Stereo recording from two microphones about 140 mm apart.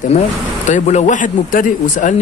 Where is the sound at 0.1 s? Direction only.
55° left (ahead or behind).